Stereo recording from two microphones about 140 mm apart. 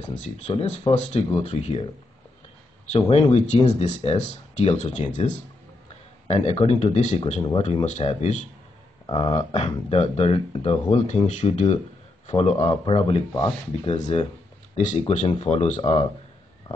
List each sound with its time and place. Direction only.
0.5 s speech: 40° left (ahead or behind)
2.9 s speech: 45° left (ahead or behind)
6.2 s speech: 50° left (ahead or behind)
9.0 s speech: 40° left (ahead or behind)
13.8 s speech: 50° left (ahead or behind)
15.8 s speech: 35° left (ahead or behind)